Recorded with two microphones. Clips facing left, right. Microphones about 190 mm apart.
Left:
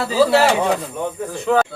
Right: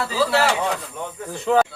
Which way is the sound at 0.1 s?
15° left (ahead or behind).